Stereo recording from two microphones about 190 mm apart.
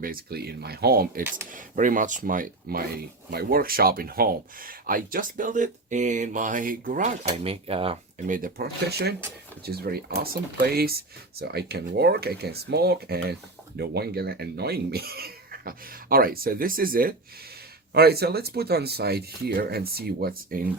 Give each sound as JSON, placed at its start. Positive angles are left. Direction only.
{"t": 0.0, "sound": "speech", "side_deg": -50}
{"t": 7.3, "sound": "speech", "side_deg": -30}
{"t": 8.3, "sound": "speech", "side_deg": -45}